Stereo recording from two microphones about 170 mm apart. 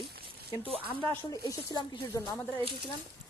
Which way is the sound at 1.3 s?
25° left (ahead or behind).